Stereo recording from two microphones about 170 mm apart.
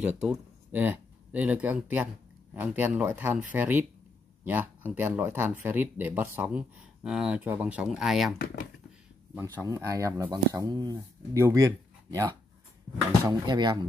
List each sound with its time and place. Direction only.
0.0 s speech: 5° right (ahead or behind)
9.3 s speech: 15° right (ahead or behind)